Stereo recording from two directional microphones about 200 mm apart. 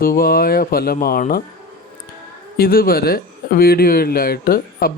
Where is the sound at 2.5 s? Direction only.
45° left (ahead or behind).